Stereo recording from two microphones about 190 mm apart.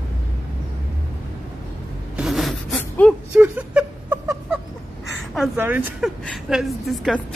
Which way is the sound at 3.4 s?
5° right (ahead or behind).